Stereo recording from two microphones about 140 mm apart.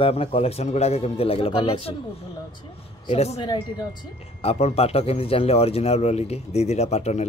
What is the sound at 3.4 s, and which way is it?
Speech, 30° left (ahead or behind).